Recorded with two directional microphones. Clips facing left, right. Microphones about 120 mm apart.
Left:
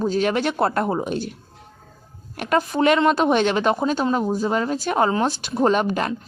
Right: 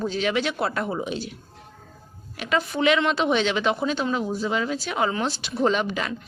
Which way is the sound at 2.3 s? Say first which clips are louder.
Left 4 dB; 50° left (ahead or behind).